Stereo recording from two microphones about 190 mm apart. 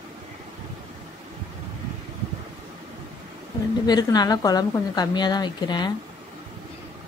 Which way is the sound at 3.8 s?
20° left (ahead or behind).